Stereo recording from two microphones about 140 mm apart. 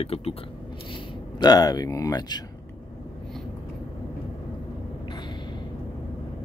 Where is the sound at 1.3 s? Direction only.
30° left (ahead or behind).